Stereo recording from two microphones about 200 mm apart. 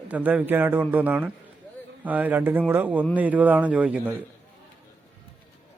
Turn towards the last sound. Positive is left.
turn(degrees=-5)  # may be behind; listen again after turning